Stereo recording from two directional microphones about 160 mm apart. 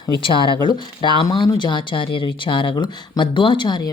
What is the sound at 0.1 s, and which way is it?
Speech, 30° left (ahead or behind).